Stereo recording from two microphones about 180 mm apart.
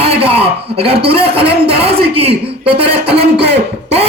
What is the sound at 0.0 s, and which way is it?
A man's voice, 35° right (ahead or behind).